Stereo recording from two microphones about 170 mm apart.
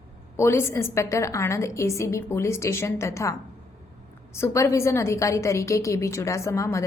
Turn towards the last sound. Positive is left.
turn(degrees=15)  # may be behind; listen again after turning